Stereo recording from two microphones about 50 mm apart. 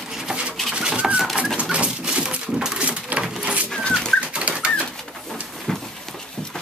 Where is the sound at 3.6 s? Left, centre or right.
Centre.